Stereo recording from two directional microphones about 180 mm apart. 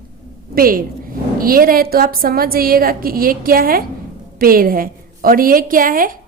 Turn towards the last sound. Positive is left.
turn(degrees=-50)  # may be behind; listen again after turning